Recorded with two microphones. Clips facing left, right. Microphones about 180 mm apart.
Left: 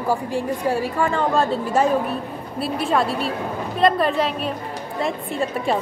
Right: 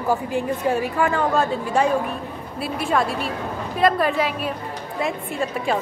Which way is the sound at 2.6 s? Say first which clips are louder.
Left 1 dB; centre (ahead or behind).